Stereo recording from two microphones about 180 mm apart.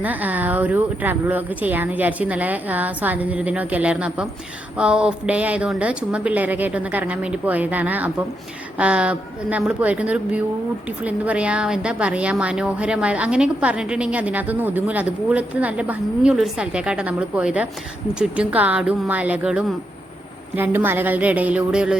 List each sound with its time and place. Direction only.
0.0 s a woman's voice: 10° right (ahead or behind)